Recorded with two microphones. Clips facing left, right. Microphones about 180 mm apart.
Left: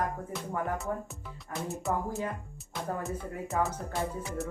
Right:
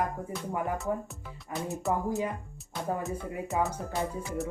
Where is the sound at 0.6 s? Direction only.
Centre (ahead or behind).